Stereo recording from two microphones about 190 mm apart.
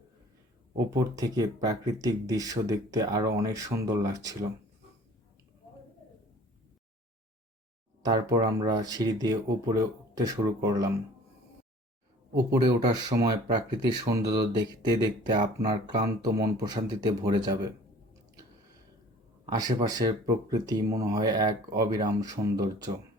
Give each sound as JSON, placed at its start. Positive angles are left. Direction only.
{"t": 0.9, "sound": "speech", "side_deg": -20}
{"t": 8.0, "sound": "speech", "side_deg": -20}
{"t": 12.6, "sound": "speech", "side_deg": -20}
{"t": 19.5, "sound": "speech", "side_deg": -20}